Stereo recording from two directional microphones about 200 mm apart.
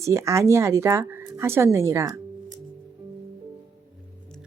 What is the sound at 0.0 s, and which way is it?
Speech, 15° right (ahead or behind).